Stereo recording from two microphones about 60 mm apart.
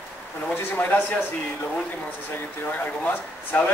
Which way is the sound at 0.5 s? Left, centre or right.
Left.